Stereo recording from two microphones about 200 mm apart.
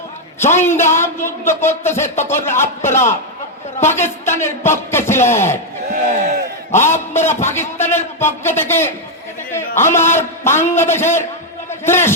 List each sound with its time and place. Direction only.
0.3 s speech: 10° left (ahead or behind)
6.7 s a man's voice: 10° left (ahead or behind)